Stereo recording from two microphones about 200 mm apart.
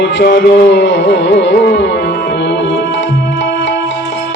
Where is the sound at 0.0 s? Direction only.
60° left (ahead or behind).